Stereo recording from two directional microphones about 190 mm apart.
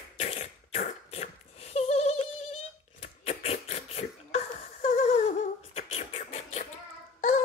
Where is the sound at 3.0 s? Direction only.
30° left (ahead or behind).